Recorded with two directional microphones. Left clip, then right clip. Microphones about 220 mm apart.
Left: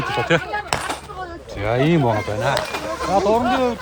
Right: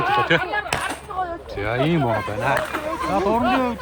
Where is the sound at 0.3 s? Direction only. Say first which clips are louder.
Even; 45° left (ahead or behind).